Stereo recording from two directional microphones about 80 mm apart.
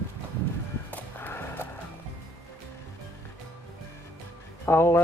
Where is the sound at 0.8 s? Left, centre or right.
Left.